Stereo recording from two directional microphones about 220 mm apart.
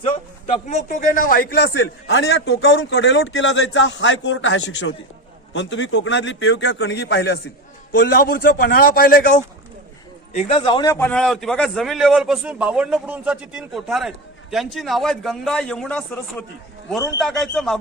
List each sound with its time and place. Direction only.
0.5 s a man's voice: 35° left (ahead or behind)
10.3 s speech: 30° left (ahead or behind)
10.9 s a man's voice: 5° left (ahead or behind)